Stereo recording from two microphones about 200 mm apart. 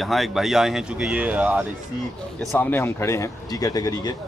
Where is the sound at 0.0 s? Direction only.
Centre (ahead or behind).